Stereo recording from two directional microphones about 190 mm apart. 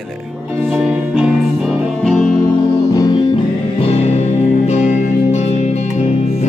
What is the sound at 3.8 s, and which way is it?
Music, 35° left (ahead or behind).